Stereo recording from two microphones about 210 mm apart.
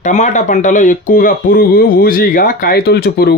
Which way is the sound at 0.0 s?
35° left (ahead or behind).